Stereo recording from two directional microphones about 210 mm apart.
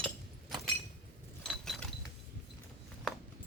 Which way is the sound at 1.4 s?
Centre (ahead or behind).